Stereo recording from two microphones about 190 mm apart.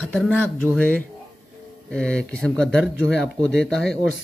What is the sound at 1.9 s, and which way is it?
Speech, 5° left (ahead or behind).